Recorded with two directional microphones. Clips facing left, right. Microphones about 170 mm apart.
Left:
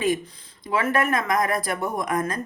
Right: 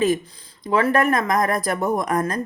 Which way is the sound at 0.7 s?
35° right (ahead or behind).